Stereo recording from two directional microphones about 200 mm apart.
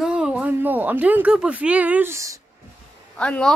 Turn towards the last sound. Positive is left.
turn(degrees=5)  # may be behind; listen again after turning